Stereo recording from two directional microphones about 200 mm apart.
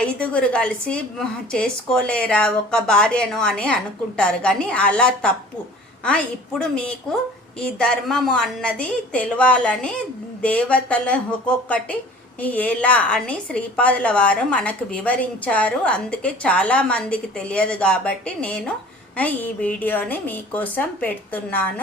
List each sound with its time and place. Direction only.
0.0 s a woman's voice: 5° left (ahead or behind)